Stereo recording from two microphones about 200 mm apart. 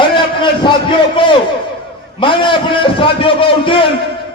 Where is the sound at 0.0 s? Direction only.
25° left (ahead or behind).